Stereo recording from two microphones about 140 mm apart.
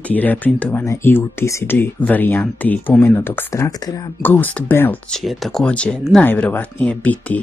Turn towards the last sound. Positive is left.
turn(degrees=10)  # may be behind; listen again after turning